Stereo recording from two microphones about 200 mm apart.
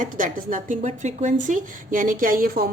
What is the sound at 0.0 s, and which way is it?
A woman's voice, 40° right (ahead or behind).